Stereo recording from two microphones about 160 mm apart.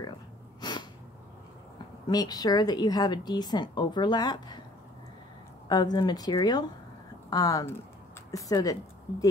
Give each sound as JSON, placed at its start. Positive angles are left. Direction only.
{"t": 0.6, "sound": "a sound", "side_deg": 25}
{"t": 2.0, "sound": "a woman's voice", "side_deg": 25}
{"t": 5.7, "sound": "a woman's voice", "side_deg": 25}